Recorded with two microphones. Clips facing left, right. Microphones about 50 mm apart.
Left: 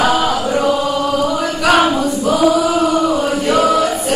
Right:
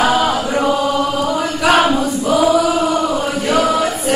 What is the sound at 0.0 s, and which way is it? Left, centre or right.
Chant, centre.